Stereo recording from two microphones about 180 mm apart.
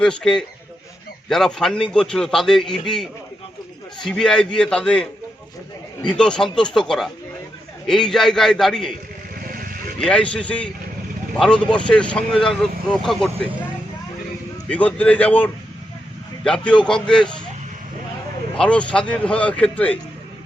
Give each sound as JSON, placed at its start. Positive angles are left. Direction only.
{"t": 0.0, "sound": "speech", "side_deg": 5}
{"t": 9.4, "sound": "sheep", "side_deg": -50}
{"t": 10.0, "sound": "speech", "side_deg": 5}
{"t": 14.7, "sound": "speech", "side_deg": 5}
{"t": 18.5, "sound": "speech", "side_deg": 5}